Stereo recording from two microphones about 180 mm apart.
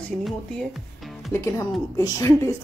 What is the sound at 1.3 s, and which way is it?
A woman's voice, 15° left (ahead or behind).